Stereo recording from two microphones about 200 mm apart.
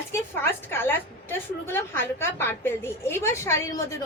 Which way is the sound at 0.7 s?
10° left (ahead or behind).